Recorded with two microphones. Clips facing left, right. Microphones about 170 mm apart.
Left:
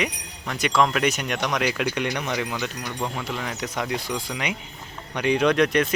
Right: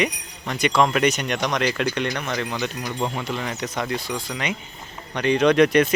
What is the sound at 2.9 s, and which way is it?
Speech, 20° right (ahead or behind).